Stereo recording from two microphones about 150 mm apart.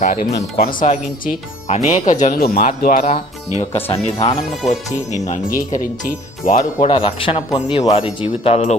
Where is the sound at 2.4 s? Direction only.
80° left; by 3.1 s 60° left (ahead or behind).